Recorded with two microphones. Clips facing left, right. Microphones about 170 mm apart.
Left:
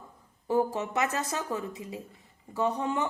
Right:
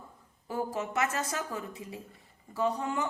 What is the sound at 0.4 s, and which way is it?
A woman's voice, 20° left (ahead or behind).